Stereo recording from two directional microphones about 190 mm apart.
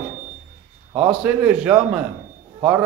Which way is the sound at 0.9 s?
5° right (ahead or behind).